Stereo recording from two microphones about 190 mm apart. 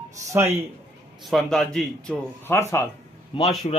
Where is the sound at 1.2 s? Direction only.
Centre (ahead or behind).